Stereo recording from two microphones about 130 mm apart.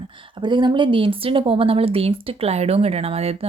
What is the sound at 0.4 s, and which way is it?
Speech, 35° right (ahead or behind).